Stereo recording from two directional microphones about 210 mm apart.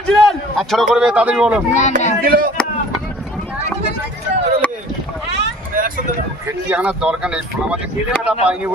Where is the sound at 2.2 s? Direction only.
45° right (ahead or behind).